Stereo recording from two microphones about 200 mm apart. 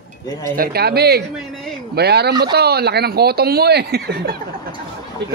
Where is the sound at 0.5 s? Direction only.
50° right (ahead or behind).